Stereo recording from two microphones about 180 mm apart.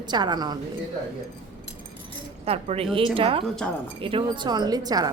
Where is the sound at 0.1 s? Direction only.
25° right (ahead or behind).